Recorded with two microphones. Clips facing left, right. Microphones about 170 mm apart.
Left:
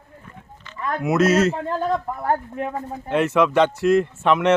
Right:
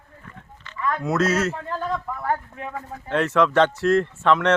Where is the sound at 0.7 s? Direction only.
35° left (ahead or behind).